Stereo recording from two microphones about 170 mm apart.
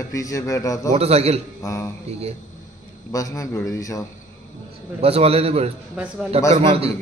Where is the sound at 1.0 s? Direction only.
35° right (ahead or behind).